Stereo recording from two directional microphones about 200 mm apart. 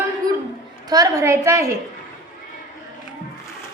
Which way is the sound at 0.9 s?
15° right (ahead or behind).